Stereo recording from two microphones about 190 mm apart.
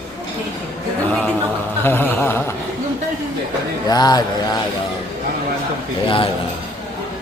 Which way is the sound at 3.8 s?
20° left (ahead or behind).